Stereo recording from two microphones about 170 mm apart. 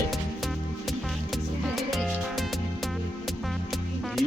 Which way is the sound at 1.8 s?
Centre (ahead or behind).